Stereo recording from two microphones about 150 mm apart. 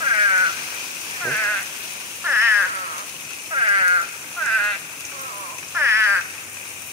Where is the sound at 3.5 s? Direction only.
30° right (ahead or behind).